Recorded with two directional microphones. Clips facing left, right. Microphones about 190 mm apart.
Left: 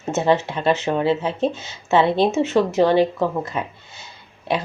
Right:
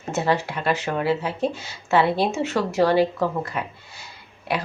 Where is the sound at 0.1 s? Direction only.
20° left (ahead or behind).